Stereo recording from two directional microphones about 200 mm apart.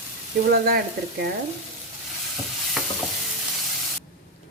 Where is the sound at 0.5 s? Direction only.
50° right (ahead or behind).